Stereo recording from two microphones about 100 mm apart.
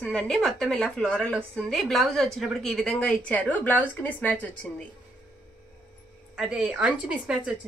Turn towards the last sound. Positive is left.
turn(degrees=-10)  # may be behind; listen again after turning